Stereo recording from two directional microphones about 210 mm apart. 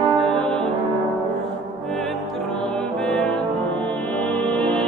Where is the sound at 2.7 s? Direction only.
Centre (ahead or behind).